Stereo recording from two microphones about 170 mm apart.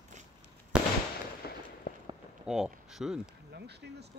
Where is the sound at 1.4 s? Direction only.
65° left (ahead or behind).